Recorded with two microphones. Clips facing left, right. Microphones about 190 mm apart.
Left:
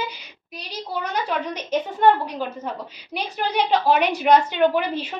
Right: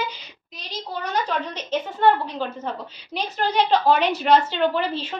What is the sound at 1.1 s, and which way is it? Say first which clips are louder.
A woman's voice: right 2 dB; 10° left (ahead or behind).